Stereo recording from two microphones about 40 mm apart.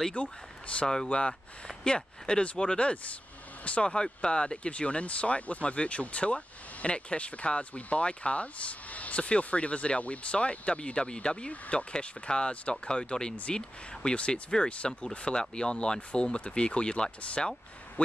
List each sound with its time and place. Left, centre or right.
0.1 s speech: left